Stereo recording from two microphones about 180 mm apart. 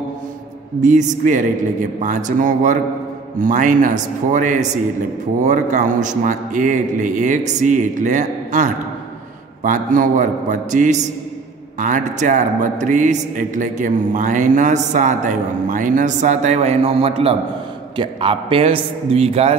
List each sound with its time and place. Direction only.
0.7 s a man's voice: 45° right (ahead or behind)